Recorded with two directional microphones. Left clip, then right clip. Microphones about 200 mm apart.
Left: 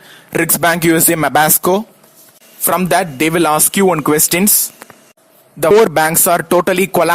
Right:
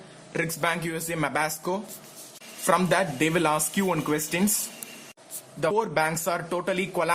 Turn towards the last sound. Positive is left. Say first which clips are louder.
# left 13 dB
turn(degrees=45)  # may be behind; listen again after turning